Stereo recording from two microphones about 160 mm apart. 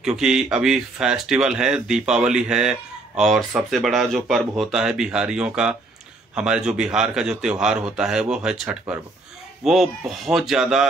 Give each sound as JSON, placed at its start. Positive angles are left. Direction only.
{"t": 0.0, "sound": "speech", "side_deg": -5}